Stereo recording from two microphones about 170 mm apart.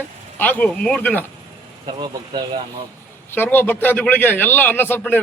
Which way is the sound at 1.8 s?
30° right (ahead or behind).